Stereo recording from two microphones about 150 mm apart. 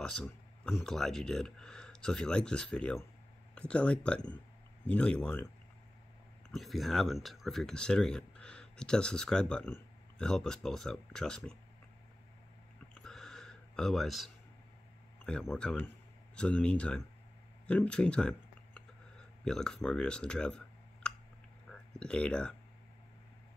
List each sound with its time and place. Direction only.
0.0 s speech: 5° left (ahead or behind)
6.5 s speech: centre (ahead or behind)
12.9 s a sound: 5° left (ahead or behind)
15.5 s speech: 5° left (ahead or behind)
17.6 s a sound: 10° left (ahead or behind)
19.4 s speech: 5° left (ahead or behind)